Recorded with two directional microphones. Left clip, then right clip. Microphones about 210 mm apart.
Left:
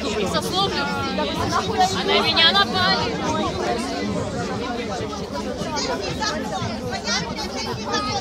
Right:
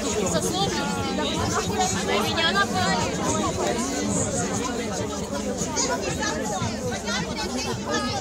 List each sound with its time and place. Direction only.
1.5 s speech: 40° left (ahead or behind)